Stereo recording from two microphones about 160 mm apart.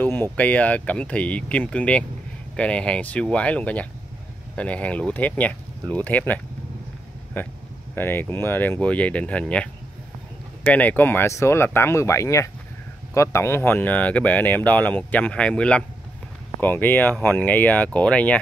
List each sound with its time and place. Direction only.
0.0 s speech: 10° left (ahead or behind)